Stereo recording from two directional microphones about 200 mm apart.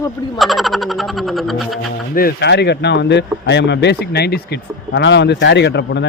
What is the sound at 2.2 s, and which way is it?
Speech, 50° left (ahead or behind).